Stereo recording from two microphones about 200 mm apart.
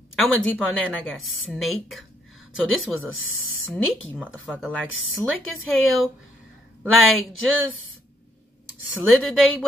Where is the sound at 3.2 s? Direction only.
90° left.